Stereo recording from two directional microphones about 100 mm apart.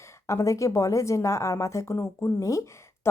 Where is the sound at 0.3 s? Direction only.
30° left (ahead or behind).